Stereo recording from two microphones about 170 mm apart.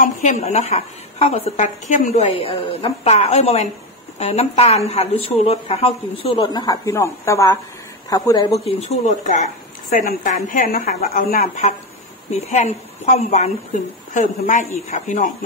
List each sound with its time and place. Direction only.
0.0 s a woman's voice: 45° left (ahead or behind); by 8.5 s 20° left (ahead or behind)
8.6 s a woman's voice: 40° left (ahead or behind)